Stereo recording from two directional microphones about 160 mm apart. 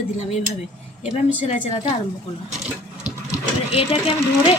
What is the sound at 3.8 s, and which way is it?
Speech, 35° left (ahead or behind).